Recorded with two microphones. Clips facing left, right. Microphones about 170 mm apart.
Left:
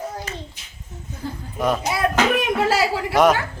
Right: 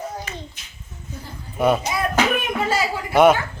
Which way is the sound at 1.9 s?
75° left (ahead or behind).